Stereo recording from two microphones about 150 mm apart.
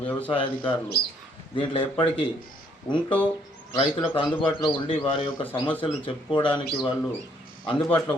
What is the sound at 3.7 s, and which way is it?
A man's voice, 35° left (ahead or behind).